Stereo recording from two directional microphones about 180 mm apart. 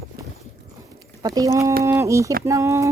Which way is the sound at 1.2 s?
20° right (ahead or behind).